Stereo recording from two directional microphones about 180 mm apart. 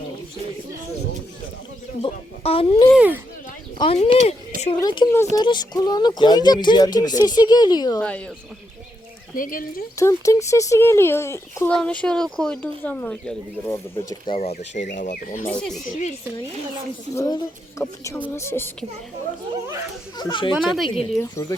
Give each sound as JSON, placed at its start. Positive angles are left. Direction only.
{"t": 2.0, "sound": "speech", "side_deg": 35}
{"t": 2.9, "sound": "speech", "side_deg": -5}
{"t": 3.8, "sound": "speech", "side_deg": 35}
{"t": 8.0, "sound": "speech", "side_deg": 5}
{"t": 9.3, "sound": "speech", "side_deg": 50}
{"t": 10.0, "sound": "speech", "side_deg": 15}
{"t": 14.3, "sound": "speech", "side_deg": 35}
{"t": 15.4, "sound": "speech", "side_deg": 5}
{"t": 15.9, "sound": "speech", "side_deg": 45}
{"t": 17.2, "sound": "speech", "side_deg": 20}
{"t": 20.1, "sound": "speech", "side_deg": 25}
{"t": 20.5, "sound": "speech", "side_deg": 0}
{"t": 20.8, "sound": "speech", "side_deg": 30}
{"t": 21.4, "sound": "speech", "side_deg": 15}